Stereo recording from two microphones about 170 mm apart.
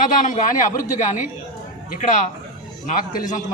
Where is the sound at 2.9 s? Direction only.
50° left (ahead or behind).